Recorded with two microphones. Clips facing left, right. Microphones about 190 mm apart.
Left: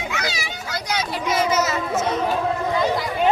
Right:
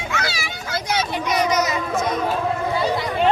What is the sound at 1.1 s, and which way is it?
Speech, 15° right (ahead or behind).